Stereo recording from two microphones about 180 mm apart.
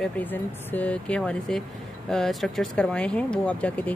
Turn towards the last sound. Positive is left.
turn(degrees=10)  # may be behind; listen again after turning